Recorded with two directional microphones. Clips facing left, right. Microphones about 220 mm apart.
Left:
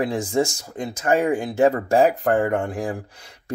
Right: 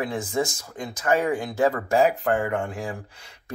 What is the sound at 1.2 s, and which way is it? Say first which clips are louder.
Speech: left 4 dB; 30° left (ahead or behind).